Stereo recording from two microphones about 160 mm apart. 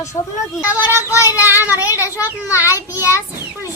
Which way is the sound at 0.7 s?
10° right (ahead or behind).